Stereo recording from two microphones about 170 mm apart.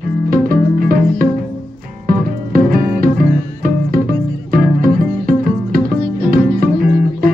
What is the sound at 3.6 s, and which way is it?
Music, 55° right (ahead or behind).